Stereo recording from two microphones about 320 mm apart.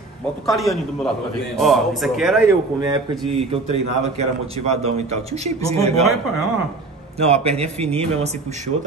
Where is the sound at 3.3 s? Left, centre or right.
Centre.